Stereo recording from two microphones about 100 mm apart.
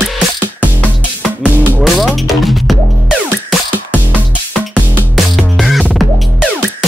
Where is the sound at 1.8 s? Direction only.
Centre (ahead or behind).